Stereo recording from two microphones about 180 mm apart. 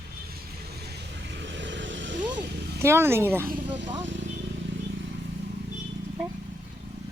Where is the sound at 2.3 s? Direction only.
60° right (ahead or behind).